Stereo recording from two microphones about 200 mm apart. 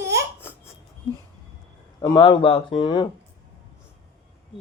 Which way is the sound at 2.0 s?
20° left (ahead or behind).